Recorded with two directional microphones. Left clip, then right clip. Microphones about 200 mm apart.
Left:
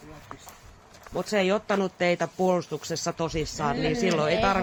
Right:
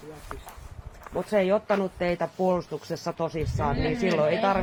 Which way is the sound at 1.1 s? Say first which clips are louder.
Right 1 dB; 30° left (ahead or behind).